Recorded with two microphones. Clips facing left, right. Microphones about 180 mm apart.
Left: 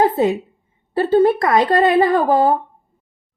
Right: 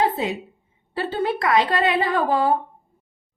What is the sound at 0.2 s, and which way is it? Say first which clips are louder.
A woman's voice: left 9 dB; 50° left (ahead or behind).